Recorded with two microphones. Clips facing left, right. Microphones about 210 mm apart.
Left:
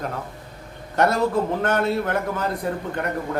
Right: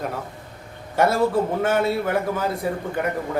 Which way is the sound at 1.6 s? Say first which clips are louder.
Right 1 dB; 5° right (ahead or behind).